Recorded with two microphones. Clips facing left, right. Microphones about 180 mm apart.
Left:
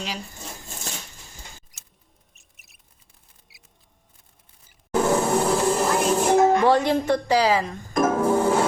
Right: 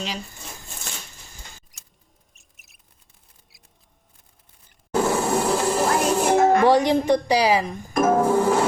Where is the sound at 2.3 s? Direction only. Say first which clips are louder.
Even; centre (ahead or behind).